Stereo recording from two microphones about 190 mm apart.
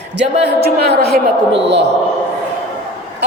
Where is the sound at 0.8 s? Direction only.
60° right (ahead or behind).